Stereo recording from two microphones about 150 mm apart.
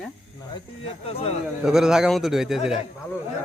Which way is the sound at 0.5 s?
40° left (ahead or behind).